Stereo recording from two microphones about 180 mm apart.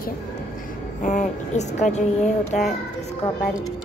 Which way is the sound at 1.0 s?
40° left (ahead or behind).